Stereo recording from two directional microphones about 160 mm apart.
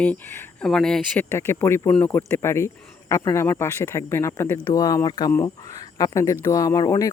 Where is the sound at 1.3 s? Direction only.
15° left (ahead or behind).